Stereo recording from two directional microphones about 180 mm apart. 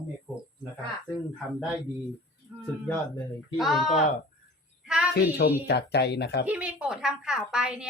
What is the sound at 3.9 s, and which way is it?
Speech, 40° left (ahead or behind).